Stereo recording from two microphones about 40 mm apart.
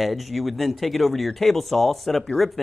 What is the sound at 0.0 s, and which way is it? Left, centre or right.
Speech, centre.